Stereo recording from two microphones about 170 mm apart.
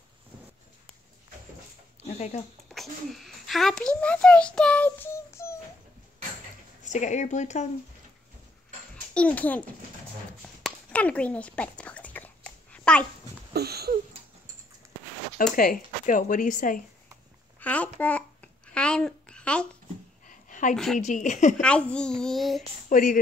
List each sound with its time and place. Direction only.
2.0 s speech: 40° left (ahead or behind)
2.7 s a child's voice: centre (ahead or behind); by 5.6 s 15° left (ahead or behind)
6.8 s speech: 45° left (ahead or behind)
9.1 s a child's voice: 10° left (ahead or behind)
10.4 s a sound: 5° left (ahead or behind)
13.5 s a sound: 70° right (ahead or behind)
15.5 s speech: 55° left (ahead or behind)
17.6 s babbling: 10° left (ahead or behind)
20.2 s a sound: 50° left (ahead or behind)
20.7 s a child's voice: 5° left (ahead or behind)
21.0 s speech: 45° left (ahead or behind)
21.5 s a child's voice: 5° left (ahead or behind)
22.8 s a woman's voice: 50° left (ahead or behind)